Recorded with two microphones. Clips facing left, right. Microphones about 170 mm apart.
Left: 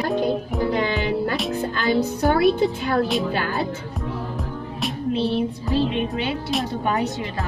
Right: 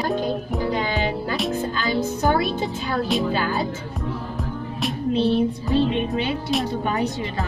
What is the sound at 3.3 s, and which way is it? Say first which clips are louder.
Speech: right 1 dB; 60° left (ahead or behind).